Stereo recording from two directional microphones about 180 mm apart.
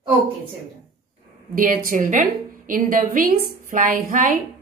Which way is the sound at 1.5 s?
45° right (ahead or behind).